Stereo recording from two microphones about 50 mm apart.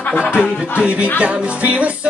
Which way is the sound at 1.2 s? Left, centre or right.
Right.